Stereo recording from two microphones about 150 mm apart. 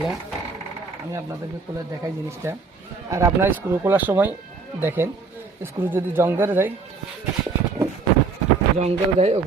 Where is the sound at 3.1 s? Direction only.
15° right (ahead or behind).